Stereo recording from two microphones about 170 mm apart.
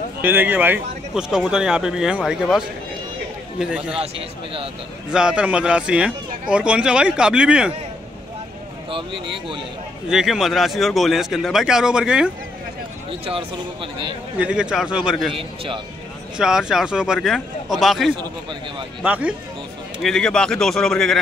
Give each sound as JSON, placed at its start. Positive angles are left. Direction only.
{"t": 0.2, "sound": "speech", "side_deg": -10}
{"t": 5.1, "sound": "speech", "side_deg": -5}
{"t": 8.9, "sound": "speech", "side_deg": -30}
{"t": 10.0, "sound": "speech", "side_deg": -5}
{"t": 14.3, "sound": "speech", "side_deg": -5}
{"t": 15.3, "sound": "speech", "side_deg": -30}
{"t": 16.3, "sound": "speech", "side_deg": -5}
{"t": 20.0, "sound": "speech", "side_deg": 5}